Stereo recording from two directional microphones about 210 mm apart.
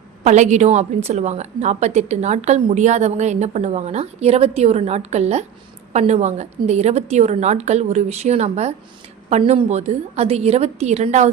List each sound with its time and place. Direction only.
0.3 s a woman's voice: 35° right (ahead or behind)